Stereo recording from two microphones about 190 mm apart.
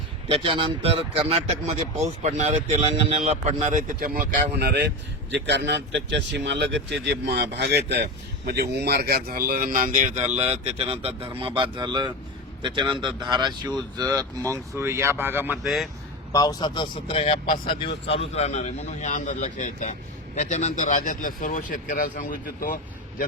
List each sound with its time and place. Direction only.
0.3 s a man's voice: 30° right (ahead or behind); by 15.9 s centre (ahead or behind)
16.3 s a man's voice: 20° left (ahead or behind); by 23.2 s 45° left (ahead or behind)